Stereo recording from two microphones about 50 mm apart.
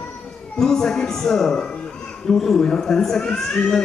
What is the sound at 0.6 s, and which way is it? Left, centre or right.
A man's voice, centre.